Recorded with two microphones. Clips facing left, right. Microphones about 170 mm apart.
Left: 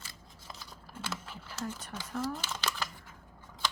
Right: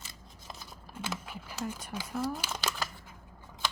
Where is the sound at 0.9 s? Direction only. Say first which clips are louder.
Right 3 dB; 15° right (ahead or behind).